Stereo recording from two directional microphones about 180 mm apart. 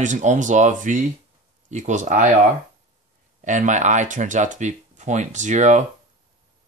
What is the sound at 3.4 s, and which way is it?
Speech, 45° right (ahead or behind).